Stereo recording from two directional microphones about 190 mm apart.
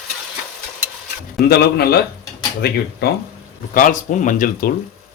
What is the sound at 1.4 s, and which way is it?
A man's voice, 55° left (ahead or behind).